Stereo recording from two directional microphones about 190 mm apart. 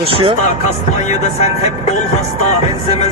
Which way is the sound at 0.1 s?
25° right (ahead or behind).